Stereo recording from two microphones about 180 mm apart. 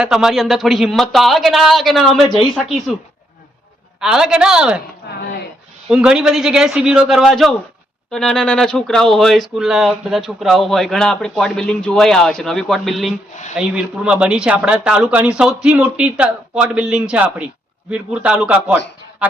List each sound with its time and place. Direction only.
0.0 s speech: 5° right (ahead or behind)
4.0 s speech: 5° right (ahead or behind)
5.1 s a sound: 65° left (ahead or behind)
5.9 s a man's voice: 5° right (ahead or behind)